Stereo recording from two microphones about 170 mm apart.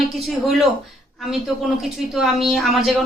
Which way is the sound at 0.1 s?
Centre (ahead or behind).